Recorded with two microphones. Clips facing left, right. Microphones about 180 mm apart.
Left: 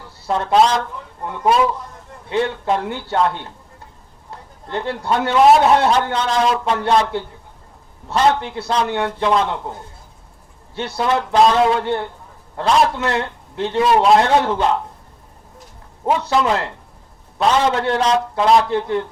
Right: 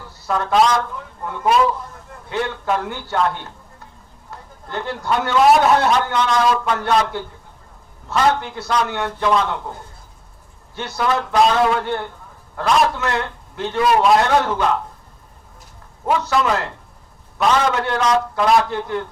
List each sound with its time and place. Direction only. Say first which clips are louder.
0.3 s a man's voice: left 1 dB; 25° left (ahead or behind)
10.8 s a man's voice: left 2 dB; 30° left (ahead or behind)
16.0 s a man's voice: left 1 dB; 25° left (ahead or behind)